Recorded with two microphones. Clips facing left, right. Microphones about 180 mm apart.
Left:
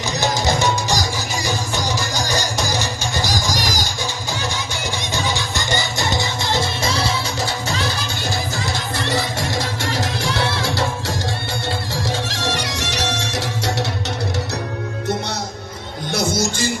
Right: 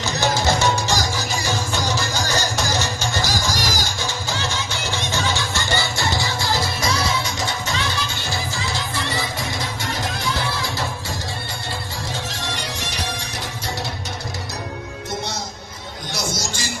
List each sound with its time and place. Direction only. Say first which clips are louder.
0.0 s music: even; 15° left (ahead or behind); by 7.8 s 30° left (ahead or behind)
9.0 s music: left 4 dB; 75° left (ahead or behind)
16.1 s music: left 8 dB; 55° left (ahead or behind)